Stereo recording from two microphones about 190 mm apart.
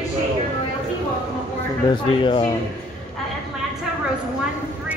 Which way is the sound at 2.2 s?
25° left (ahead or behind).